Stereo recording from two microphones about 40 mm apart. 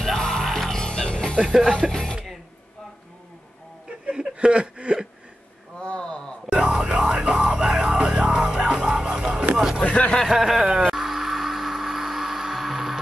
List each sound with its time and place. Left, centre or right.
0.0 s music: centre
0.8 s music: left
1.4 s speech: centre
1.7 s speech: centre
4.0 s a sound: right
5.8 s a sound: left
6.5 s music: right
9.8 s speech: left
10.2 s speech: centre
10.6 s speech: right
11.1 s music: centre